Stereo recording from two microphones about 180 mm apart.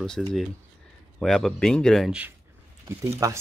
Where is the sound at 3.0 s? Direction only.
15° right (ahead or behind).